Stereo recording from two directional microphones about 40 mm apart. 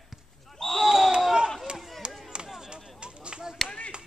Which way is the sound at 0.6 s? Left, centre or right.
Centre.